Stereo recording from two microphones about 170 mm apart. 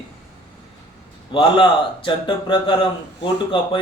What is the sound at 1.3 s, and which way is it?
Speech, 30° left (ahead or behind).